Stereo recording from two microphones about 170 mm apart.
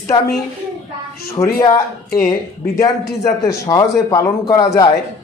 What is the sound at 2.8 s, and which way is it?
A man's voice, 20° left (ahead or behind).